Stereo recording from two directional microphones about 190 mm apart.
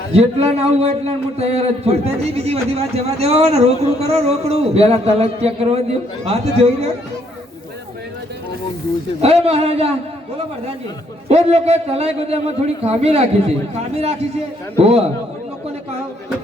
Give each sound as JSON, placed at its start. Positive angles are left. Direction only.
{"t": 0.1, "sound": "a man's voice", "side_deg": -35}
{"t": 9.2, "sound": "a man's voice", "side_deg": -35}
{"t": 11.3, "sound": "a man's voice", "side_deg": -35}